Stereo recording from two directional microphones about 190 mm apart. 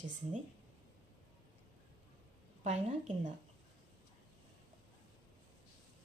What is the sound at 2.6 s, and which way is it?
Speech, 35° right (ahead or behind).